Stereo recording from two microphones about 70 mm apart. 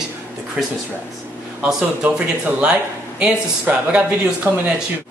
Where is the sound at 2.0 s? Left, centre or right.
Right.